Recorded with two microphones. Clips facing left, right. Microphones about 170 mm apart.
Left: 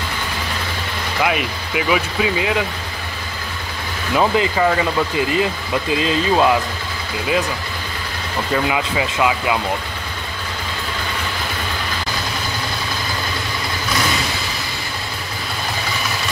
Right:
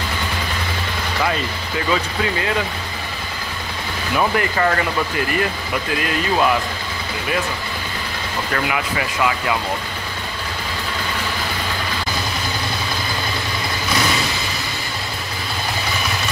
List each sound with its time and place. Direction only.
1.2 s speech: 10° left (ahead or behind)
4.1 s speech: 20° left (ahead or behind)
4.6 s speech: 10° left (ahead or behind)
5.2 s speech: 20° left (ahead or behind)
8.6 s speech: 20° left (ahead or behind)